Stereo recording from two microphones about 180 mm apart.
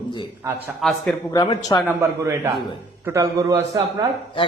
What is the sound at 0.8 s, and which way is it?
Speech, centre (ahead or behind).